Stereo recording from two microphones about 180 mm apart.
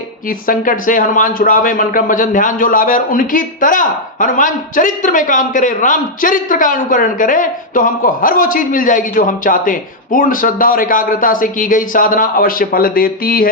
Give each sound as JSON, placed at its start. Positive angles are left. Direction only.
{"t": 0.3, "sound": "speech", "side_deg": 50}